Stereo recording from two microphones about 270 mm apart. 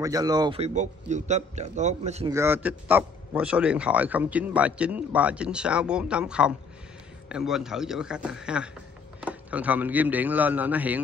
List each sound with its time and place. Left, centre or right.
0.0 s a man's voice: centre
2.3 s a man's voice: centre